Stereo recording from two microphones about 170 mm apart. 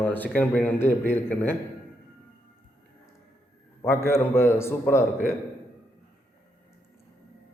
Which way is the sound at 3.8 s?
15° left (ahead or behind).